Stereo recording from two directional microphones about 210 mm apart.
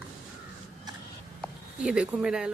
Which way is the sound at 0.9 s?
20° right (ahead or behind).